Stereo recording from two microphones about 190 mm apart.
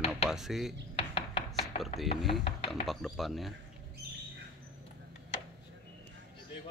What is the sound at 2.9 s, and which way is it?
Speech, centre (ahead or behind).